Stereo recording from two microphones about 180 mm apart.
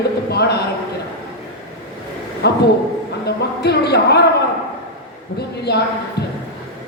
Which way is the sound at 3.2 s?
65° left (ahead or behind).